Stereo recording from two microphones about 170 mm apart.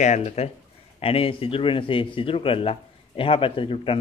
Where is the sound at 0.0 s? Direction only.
40° left (ahead or behind).